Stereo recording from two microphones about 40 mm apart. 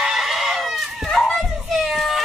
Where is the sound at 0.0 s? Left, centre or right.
Centre.